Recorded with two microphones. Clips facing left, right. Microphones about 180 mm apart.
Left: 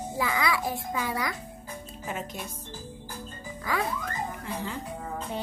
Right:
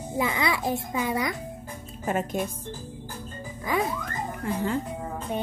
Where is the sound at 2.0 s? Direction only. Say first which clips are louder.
Right 9 dB; 50° right (ahead or behind).